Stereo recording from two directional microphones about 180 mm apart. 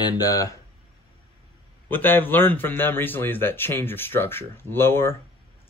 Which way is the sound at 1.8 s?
10° left (ahead or behind).